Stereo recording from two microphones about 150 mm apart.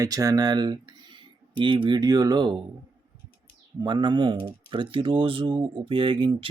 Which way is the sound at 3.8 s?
30° right (ahead or behind).